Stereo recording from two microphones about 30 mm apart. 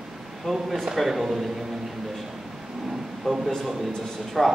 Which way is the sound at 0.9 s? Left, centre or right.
Centre.